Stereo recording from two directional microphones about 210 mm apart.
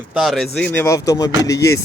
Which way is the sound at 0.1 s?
Centre (ahead or behind).